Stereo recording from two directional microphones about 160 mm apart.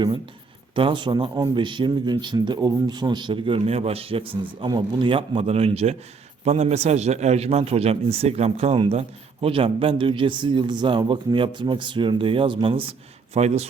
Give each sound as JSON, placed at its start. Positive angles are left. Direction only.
{"t": 0.8, "sound": "a man's voice", "side_deg": -30}